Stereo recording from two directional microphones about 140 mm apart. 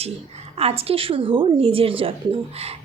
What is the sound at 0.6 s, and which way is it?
A woman's voice, 45° right (ahead or behind).